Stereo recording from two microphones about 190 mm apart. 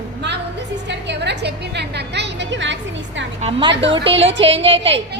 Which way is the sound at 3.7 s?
70° right (ahead or behind).